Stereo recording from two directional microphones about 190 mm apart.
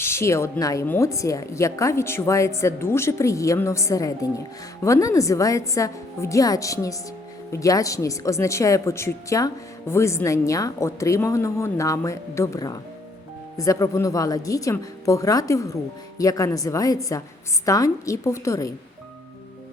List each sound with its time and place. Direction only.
0.0 s speech: 15° left (ahead or behind)